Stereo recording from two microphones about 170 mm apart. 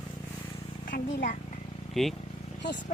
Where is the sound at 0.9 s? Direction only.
55° left (ahead or behind).